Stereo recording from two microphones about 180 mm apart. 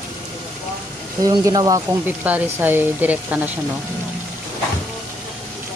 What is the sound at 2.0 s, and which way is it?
Speech, 10° right (ahead or behind).